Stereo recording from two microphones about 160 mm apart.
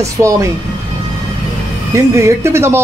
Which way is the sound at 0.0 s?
20° right (ahead or behind).